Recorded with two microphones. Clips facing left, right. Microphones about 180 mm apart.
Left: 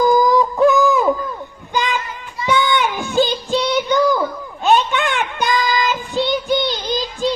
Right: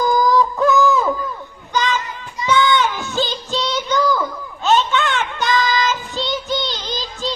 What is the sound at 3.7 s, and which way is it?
Child singing, 20° left (ahead or behind).